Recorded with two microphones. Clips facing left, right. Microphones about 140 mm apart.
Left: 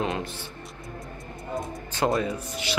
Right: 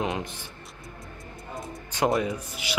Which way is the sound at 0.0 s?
20° right (ahead or behind).